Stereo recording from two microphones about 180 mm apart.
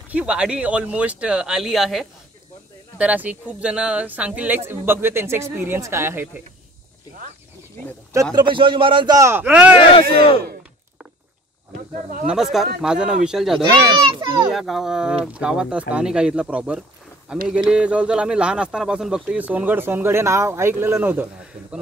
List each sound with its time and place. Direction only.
0.1 s speech: 5° right (ahead or behind)
8.4 s a man's voice: 25° right (ahead or behind); by 9.8 s 5° right (ahead or behind)
11.7 s speech: 45° right (ahead or behind)
12.3 s speech: centre (ahead or behind)
13.7 s a child's voice: 60° right (ahead or behind)
14.1 s a man's voice: 25° right (ahead or behind)
14.5 s speech: centre (ahead or behind)